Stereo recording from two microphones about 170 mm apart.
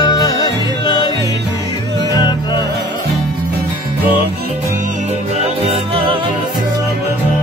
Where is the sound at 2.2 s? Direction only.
25° left (ahead or behind).